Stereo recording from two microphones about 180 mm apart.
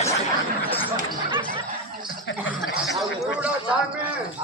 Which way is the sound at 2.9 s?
5° right (ahead or behind).